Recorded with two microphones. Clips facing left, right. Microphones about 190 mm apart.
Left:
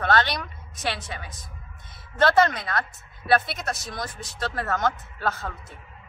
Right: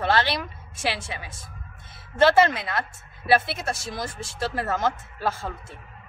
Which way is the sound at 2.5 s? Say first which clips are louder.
Even; 5° right (ahead or behind).